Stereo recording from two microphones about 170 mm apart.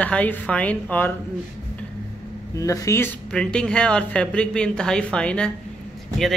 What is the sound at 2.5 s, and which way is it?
Speech, 20° left (ahead or behind).